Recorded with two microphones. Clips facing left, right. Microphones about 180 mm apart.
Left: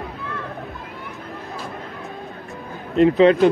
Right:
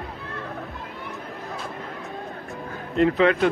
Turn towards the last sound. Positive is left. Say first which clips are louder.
# left 5 dB
turn(degrees=25)  # may be behind; listen again after turning